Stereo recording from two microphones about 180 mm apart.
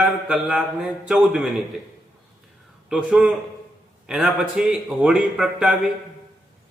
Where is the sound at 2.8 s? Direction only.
5° right (ahead or behind).